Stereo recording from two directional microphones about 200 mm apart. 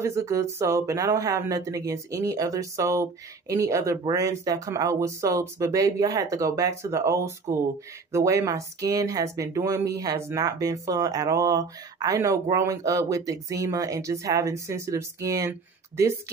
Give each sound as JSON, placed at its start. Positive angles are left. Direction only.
{"t": 0.0, "sound": "speech", "side_deg": -15}